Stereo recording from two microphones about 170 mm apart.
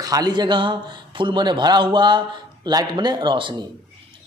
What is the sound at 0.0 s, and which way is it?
Speech, 20° right (ahead or behind).